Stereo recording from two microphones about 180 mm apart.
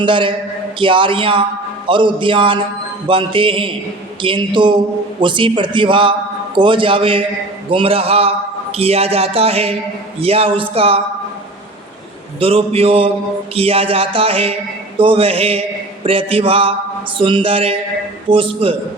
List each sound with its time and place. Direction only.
0.0 s a man's voice: 25° right (ahead or behind)
12.4 s a man's voice: 30° right (ahead or behind)